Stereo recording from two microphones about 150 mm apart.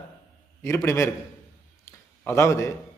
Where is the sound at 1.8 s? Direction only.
15° left (ahead or behind).